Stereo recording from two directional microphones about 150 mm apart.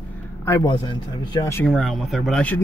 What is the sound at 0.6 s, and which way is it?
Speech, 30° left (ahead or behind).